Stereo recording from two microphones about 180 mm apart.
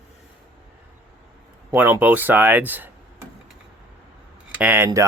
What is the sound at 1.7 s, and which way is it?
Speech, 15° right (ahead or behind).